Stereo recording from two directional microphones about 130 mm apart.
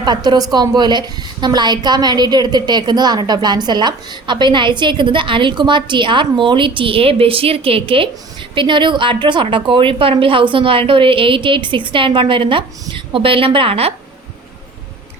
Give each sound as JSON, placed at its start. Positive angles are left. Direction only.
{"t": 0.0, "sound": "a woman's voice", "side_deg": -35}